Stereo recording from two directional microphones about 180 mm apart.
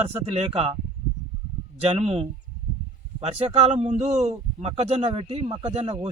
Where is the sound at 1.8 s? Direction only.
35° right (ahead or behind).